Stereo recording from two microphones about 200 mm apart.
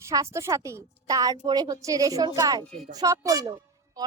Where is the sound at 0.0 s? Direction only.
15° right (ahead or behind).